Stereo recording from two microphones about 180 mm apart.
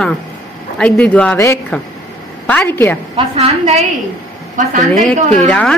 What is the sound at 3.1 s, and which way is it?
Speech, 30° right (ahead or behind).